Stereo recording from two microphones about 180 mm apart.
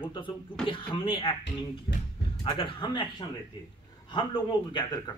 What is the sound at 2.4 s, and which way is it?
A man's voice, 30° left (ahead or behind).